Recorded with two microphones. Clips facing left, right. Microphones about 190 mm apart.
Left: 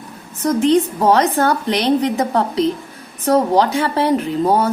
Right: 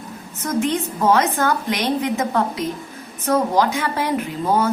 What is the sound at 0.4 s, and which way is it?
Speech, 35° left (ahead or behind).